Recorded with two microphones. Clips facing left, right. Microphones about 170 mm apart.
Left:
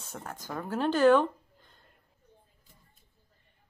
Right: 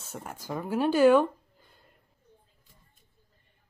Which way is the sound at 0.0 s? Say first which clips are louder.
Right 1 dB; 10° right (ahead or behind).